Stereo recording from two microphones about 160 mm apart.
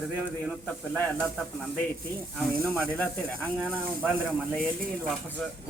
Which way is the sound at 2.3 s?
Centre (ahead or behind).